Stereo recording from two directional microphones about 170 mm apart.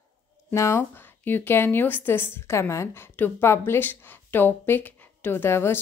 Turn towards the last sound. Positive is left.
turn(degrees=15)  # may be behind; listen again after turning